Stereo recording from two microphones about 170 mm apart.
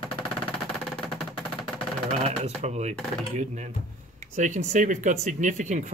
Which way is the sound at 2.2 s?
40° right (ahead or behind).